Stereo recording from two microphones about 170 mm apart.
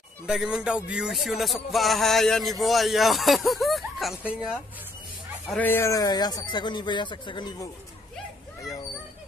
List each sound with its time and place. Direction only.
0.3 s music: 5° right (ahead or behind)
5.5 s a man's voice: 10° left (ahead or behind)